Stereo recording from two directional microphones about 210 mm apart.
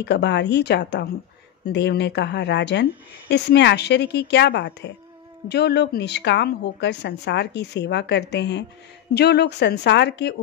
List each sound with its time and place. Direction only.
0.0 s a woman's voice: 55° left (ahead or behind)